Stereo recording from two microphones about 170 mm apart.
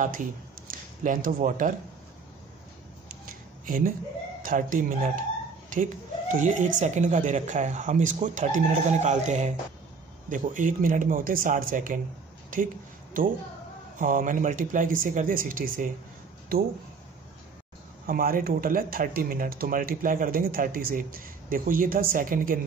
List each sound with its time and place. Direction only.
0.0 s speech: 50° right (ahead or behind)
3.6 s speech: 55° right (ahead or behind)
18.0 s speech: 55° right (ahead or behind)